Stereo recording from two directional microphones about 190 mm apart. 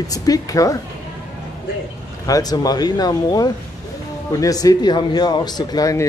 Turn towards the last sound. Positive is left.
turn(degrees=20)  # may be behind; listen again after turning